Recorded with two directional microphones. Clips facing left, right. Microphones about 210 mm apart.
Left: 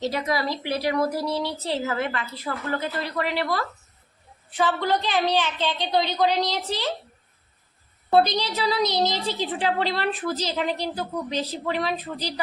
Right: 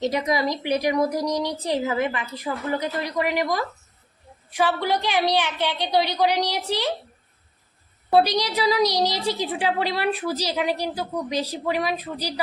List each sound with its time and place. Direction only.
0.0 s a woman's voice: 15° right (ahead or behind)
8.1 s a woman's voice: 10° right (ahead or behind)